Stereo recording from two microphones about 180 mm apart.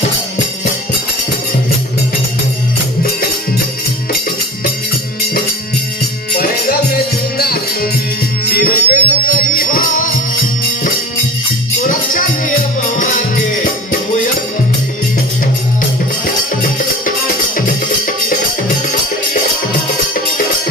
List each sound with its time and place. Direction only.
6.3 s music: 55° left (ahead or behind)
8.5 s music: 55° left (ahead or behind)
11.9 s music: 45° left (ahead or behind)